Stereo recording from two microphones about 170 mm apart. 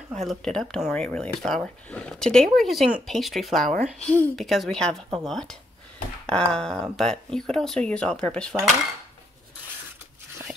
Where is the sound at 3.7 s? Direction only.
45° right (ahead or behind).